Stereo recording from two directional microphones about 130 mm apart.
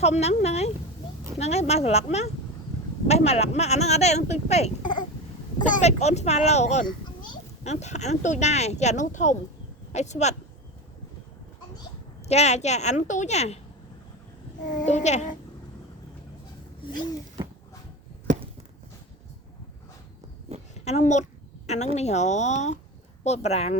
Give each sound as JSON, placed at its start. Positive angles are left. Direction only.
{"t": 0.0, "sound": "speech", "side_deg": 55}
{"t": 4.8, "sound": "a sound", "side_deg": 35}
{"t": 5.6, "sound": "speech", "side_deg": 60}
{"t": 12.3, "sound": "speech", "side_deg": 60}
{"t": 14.8, "sound": "speech", "side_deg": 60}
{"t": 20.7, "sound": "a child's voice", "side_deg": 55}